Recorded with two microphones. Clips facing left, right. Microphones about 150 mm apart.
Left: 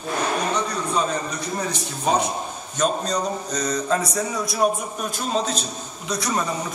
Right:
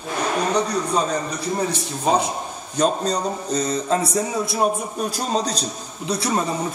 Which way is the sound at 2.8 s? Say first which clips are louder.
Right 2 dB; 30° right (ahead or behind).